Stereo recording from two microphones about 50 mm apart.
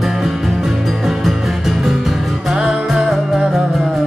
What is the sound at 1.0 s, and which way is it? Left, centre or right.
Music, centre.